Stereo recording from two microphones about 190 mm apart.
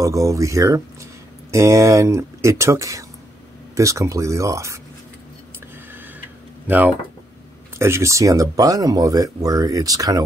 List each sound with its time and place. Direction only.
0.0 s speech: 15° right (ahead or behind)
7.8 s speech: 15° right (ahead or behind)